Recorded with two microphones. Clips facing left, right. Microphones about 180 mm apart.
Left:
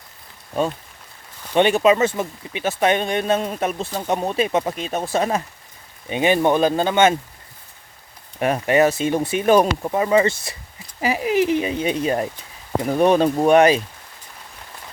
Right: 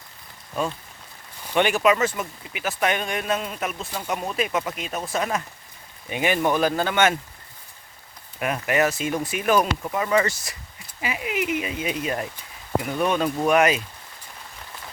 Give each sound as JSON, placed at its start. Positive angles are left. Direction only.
{"t": 1.5, "sound": "speech", "side_deg": 25}
{"t": 8.4, "sound": "speech", "side_deg": 30}